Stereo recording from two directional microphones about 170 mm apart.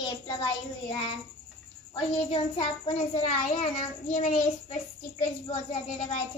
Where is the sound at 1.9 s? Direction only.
35° left (ahead or behind).